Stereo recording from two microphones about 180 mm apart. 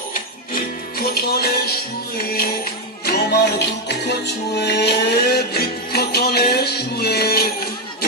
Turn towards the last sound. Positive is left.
turn(degrees=60)  # may be behind; listen again after turning